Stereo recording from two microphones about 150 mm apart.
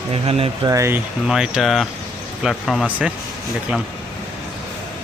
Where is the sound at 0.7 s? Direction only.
20° right (ahead or behind).